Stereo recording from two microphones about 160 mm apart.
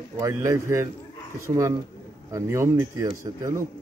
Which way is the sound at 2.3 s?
20° right (ahead or behind).